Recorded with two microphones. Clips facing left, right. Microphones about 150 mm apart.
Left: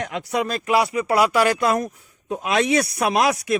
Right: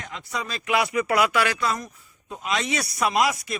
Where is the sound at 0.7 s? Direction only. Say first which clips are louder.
Left 3 dB; 30° left (ahead or behind).